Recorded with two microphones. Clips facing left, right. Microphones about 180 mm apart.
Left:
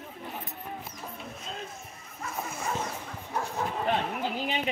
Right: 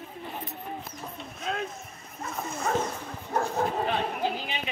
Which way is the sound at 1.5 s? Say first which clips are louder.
Right 10 dB; 70° right (ahead or behind).